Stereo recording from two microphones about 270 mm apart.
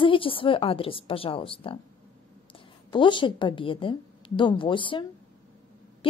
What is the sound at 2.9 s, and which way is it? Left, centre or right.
A woman's voice, centre.